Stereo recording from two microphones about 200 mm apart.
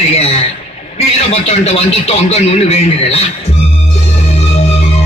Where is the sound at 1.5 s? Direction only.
30° left (ahead or behind).